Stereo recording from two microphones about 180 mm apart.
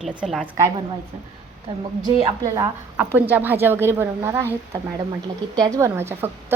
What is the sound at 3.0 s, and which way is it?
A woman's voice, 10° right (ahead or behind).